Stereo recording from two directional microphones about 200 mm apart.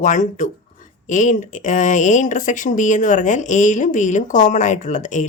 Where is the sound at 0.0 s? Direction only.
40° left (ahead or behind).